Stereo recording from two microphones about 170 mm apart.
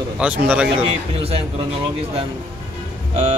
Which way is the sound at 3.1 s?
40° right (ahead or behind).